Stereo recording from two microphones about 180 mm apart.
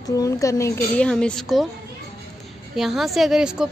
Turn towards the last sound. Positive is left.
turn(degrees=-5)  # may be behind; listen again after turning